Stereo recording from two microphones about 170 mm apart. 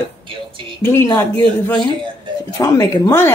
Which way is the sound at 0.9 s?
15° left (ahead or behind).